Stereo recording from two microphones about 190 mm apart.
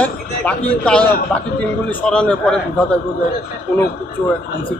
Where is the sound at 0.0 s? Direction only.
5° left (ahead or behind).